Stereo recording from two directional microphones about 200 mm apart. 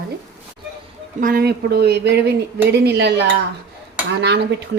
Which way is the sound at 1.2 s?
45° right (ahead or behind).